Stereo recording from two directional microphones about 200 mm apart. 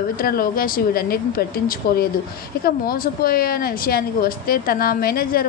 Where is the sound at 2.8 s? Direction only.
50° left (ahead or behind).